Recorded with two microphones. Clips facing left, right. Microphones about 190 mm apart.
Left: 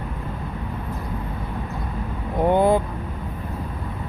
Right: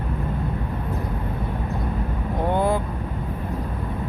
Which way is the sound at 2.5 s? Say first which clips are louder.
Left 4 dB; 20° left (ahead or behind).